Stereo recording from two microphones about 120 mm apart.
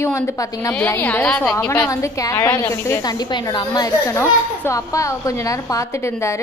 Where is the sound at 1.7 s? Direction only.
25° left (ahead or behind).